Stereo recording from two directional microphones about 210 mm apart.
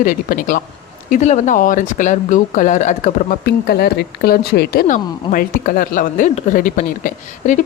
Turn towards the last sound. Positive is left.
turn(degrees=35)  # may be behind; listen again after turning